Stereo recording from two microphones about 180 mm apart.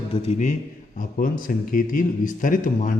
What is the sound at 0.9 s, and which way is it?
A man's voice, 50° left (ahead or behind).